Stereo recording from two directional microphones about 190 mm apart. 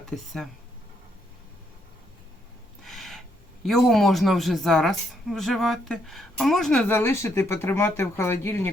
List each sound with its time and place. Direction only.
0.1 s speech: 5° left (ahead or behind)
2.8 s gasp: centre (ahead or behind)
3.7 s speech: centre (ahead or behind)